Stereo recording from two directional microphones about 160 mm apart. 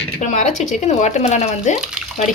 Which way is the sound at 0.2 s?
50° left (ahead or behind).